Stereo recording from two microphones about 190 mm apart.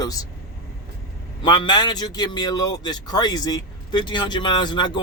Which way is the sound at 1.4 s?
25° left (ahead or behind).